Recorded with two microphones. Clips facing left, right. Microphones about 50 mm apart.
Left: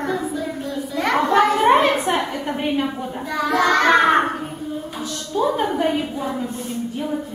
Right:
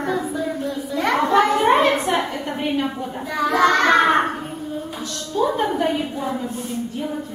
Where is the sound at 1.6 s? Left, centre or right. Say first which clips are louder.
Left 1 dB; centre.